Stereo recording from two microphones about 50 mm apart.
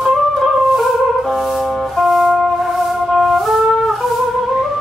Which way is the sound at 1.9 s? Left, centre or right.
Centre.